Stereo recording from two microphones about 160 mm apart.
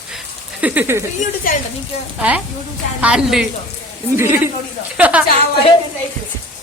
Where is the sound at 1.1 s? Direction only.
50° left (ahead or behind).